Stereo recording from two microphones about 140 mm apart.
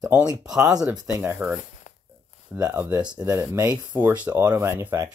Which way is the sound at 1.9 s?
60° left (ahead or behind).